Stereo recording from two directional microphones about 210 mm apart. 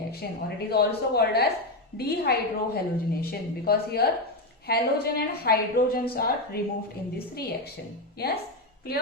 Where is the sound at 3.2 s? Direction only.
50° left (ahead or behind).